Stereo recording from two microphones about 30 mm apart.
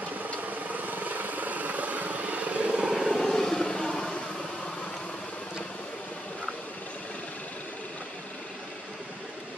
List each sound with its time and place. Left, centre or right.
0.4 s vehicle: right
2.7 s vehicle: right
3.2 s vehicle: centre